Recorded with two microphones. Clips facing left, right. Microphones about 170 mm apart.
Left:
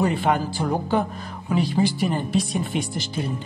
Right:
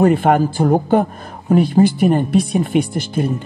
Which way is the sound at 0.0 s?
55° right (ahead or behind).